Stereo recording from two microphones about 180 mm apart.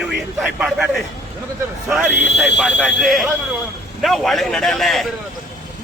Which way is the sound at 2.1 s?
85° left.